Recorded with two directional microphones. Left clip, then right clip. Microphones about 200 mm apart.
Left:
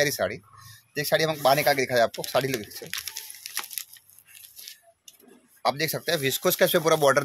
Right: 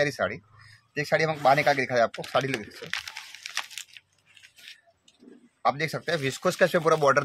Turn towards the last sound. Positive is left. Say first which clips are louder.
# left 1 dB
turn(degrees=30)  # may be behind; listen again after turning